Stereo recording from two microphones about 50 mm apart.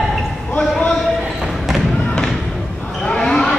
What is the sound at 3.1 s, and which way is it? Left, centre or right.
Basketball bounce, centre.